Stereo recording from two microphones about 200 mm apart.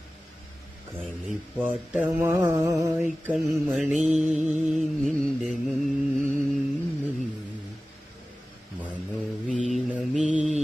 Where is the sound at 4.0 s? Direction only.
35° right (ahead or behind).